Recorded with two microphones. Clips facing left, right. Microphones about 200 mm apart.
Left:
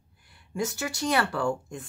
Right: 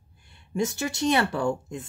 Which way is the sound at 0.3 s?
20° right (ahead or behind).